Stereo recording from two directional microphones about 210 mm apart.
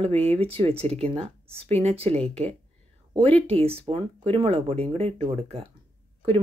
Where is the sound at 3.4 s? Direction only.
30° right (ahead or behind).